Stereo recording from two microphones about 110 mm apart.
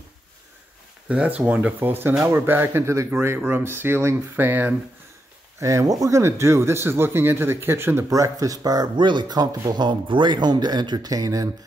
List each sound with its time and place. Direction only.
1.0 s speech: 10° right (ahead or behind)
5.6 s speech: 30° right (ahead or behind)